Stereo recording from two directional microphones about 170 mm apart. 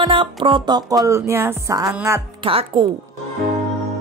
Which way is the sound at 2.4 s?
35° right (ahead or behind).